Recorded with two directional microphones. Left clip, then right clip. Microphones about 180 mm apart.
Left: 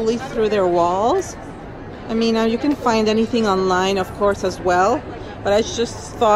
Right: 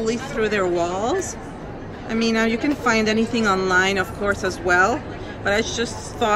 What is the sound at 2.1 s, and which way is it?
A woman's voice, 25° left (ahead or behind).